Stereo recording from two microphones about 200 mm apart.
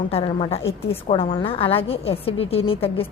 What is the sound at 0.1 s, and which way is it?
A woman's voice, 25° left (ahead or behind).